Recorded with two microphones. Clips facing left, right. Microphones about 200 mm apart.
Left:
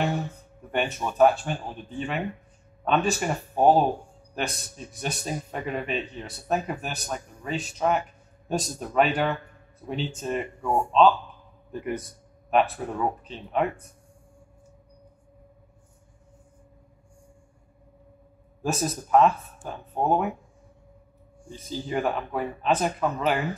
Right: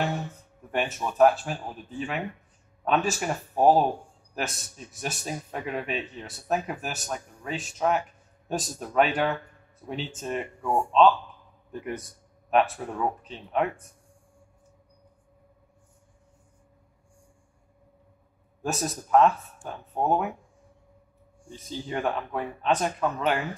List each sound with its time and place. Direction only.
0.7 s a man's voice: centre (ahead or behind)
12.4 s a man's voice: centre (ahead or behind)
18.6 s a man's voice: centre (ahead or behind)
21.5 s a man's voice: centre (ahead or behind)